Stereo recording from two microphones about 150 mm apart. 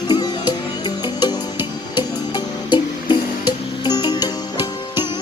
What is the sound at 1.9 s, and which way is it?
Music, 30° left (ahead or behind).